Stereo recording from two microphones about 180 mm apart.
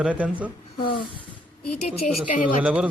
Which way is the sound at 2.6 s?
5° right (ahead or behind).